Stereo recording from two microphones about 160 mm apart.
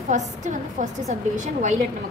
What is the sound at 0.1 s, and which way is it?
A woman's voice, 50° right (ahead or behind).